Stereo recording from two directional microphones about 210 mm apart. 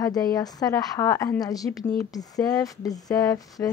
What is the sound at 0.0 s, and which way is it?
A woman's voice, 15° left (ahead or behind).